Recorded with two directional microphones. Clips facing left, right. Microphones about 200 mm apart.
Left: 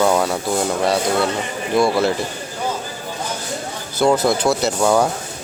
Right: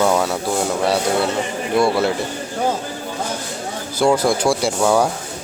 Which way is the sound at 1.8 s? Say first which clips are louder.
Left 1 dB; 10° right (ahead or behind).